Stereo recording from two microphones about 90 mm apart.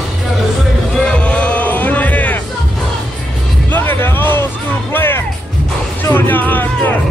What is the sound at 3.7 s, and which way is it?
Music, 25° left (ahead or behind).